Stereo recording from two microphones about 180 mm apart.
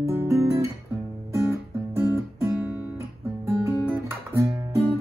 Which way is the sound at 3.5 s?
15° right (ahead or behind).